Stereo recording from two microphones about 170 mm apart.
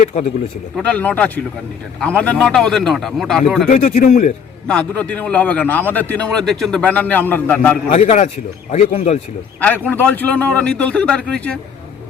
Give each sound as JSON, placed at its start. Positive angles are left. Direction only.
{"t": 0.8, "sound": "a man's voice", "side_deg": 10}
{"t": 3.7, "sound": "speech", "side_deg": 45}
{"t": 4.7, "sound": "a man's voice", "side_deg": 5}
{"t": 7.9, "sound": "a man's voice", "side_deg": 40}
{"t": 9.6, "sound": "a man's voice", "side_deg": 10}